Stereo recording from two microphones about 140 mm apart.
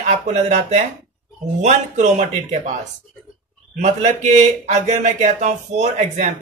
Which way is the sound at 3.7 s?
55° right (ahead or behind).